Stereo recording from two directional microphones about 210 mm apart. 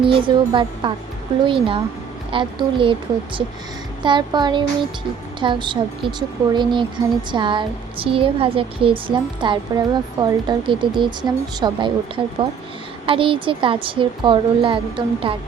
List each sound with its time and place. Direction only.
0.0 s a woman's voice: 25° right (ahead or behind)